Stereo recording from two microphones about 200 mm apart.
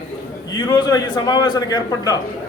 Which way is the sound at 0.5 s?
20° left (ahead or behind).